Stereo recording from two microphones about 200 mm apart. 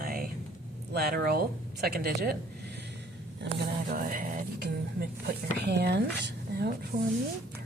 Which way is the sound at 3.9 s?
45° right (ahead or behind).